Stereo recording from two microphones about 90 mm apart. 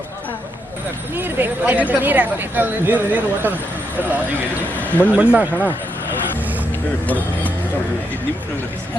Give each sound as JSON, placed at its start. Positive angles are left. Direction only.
{"t": 1.1, "sound": "speech", "side_deg": -20}
{"t": 4.8, "sound": "a sound", "side_deg": 20}
{"t": 5.1, "sound": "speech", "side_deg": -15}